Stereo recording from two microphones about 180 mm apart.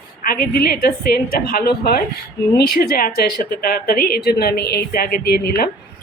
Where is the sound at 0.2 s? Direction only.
55° left (ahead or behind).